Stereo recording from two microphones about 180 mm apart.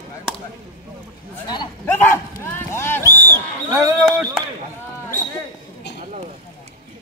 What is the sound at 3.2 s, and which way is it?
Speech, 15° right (ahead or behind).